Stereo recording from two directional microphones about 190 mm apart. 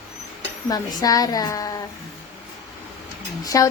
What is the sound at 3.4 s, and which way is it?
Speech, 15° left (ahead or behind).